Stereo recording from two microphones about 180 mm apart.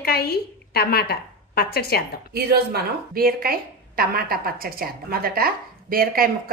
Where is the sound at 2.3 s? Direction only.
60° right (ahead or behind).